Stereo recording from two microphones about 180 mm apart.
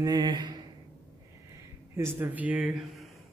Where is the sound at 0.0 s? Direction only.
25° right (ahead or behind).